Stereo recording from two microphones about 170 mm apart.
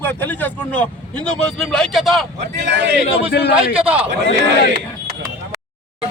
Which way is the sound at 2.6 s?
85° right.